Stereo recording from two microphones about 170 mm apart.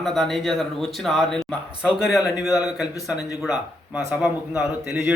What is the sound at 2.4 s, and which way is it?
A man's voice, 20° left (ahead or behind).